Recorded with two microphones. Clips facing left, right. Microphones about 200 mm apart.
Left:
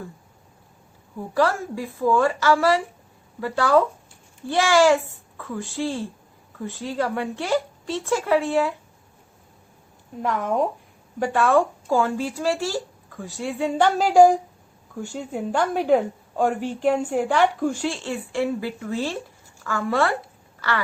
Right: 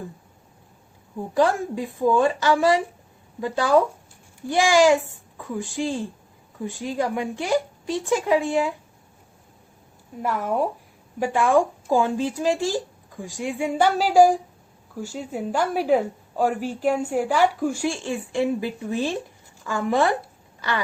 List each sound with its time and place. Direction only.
1.1 s a woman's voice: 20° right (ahead or behind)
10.2 s a woman's voice: 5° right (ahead or behind)
20.6 s a sound: 15° right (ahead or behind)